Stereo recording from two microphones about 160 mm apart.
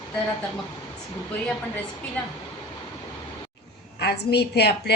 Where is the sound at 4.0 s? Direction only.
90° left.